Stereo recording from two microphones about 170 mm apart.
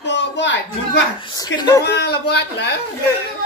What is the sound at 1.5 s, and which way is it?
Speech, 20° left (ahead or behind).